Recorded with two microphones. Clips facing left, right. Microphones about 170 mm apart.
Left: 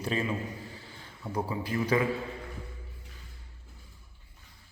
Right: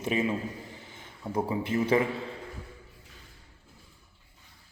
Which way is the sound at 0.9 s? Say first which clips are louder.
Right 3 dB; 20° right (ahead or behind).